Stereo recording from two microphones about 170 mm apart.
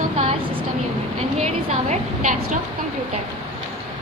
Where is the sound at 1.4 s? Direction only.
45° right (ahead or behind).